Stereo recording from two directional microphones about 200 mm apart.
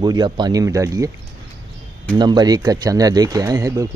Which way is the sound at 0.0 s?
20° right (ahead or behind).